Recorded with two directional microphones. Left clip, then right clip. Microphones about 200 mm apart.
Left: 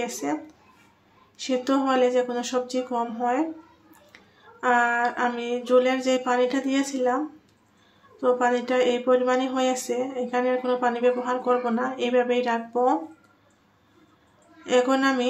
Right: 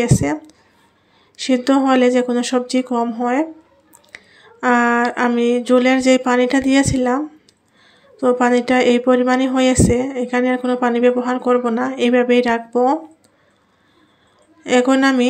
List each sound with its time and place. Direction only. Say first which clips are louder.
0.0 s speech: right 9 dB; 40° right (ahead or behind)
4.1 s a sound: right 12 dB; 40° right (ahead or behind)
8.2 s speech: right 7 dB; 40° right (ahead or behind)
14.6 s speech: right 7 dB; 40° right (ahead or behind)